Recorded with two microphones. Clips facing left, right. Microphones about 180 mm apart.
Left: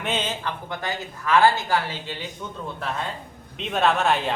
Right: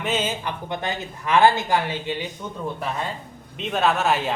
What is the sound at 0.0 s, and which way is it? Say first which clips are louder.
Speech: right 2 dB; 5° right (ahead or behind).